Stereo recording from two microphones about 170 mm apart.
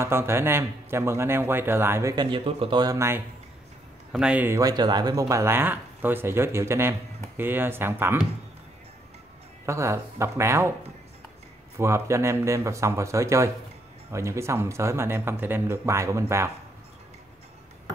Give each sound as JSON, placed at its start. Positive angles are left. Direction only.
{"t": 0.0, "sound": "speech", "side_deg": -15}
{"t": 2.1, "sound": "speech", "side_deg": -30}
{"t": 4.1, "sound": "speech", "side_deg": -5}
{"t": 9.7, "sound": "speech", "side_deg": -15}
{"t": 11.7, "sound": "speech", "side_deg": -15}